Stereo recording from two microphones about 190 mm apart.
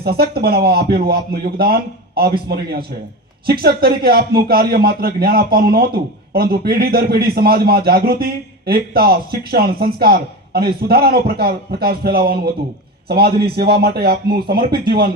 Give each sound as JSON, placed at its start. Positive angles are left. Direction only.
{"t": 0.0, "sound": "a man's voice", "side_deg": -55}